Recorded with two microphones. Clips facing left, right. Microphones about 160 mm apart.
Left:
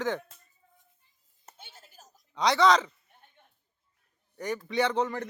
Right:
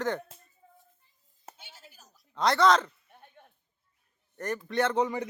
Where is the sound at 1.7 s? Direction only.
50° left (ahead or behind).